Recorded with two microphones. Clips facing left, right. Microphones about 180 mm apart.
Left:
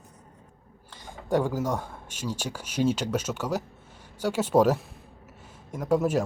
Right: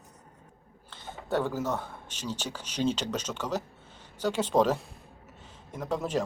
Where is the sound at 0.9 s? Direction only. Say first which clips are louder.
Left 4 dB; 10° left (ahead or behind).